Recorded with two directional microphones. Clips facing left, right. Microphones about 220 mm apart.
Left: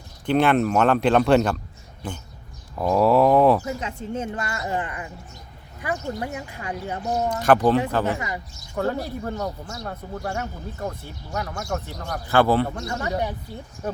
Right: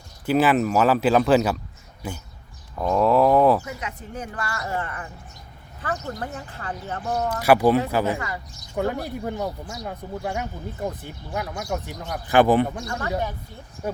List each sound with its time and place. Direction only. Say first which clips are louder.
0.3 s speech: even; 5° right (ahead or behind)
2.7 s speech: left 1 dB; 5° left (ahead or behind)
3.6 s a woman's voice: left 5 dB; 30° left (ahead or behind)
7.4 s speech: right 1 dB; 10° right (ahead or behind)
12.8 s speech: left 1 dB; 15° left (ahead or behind)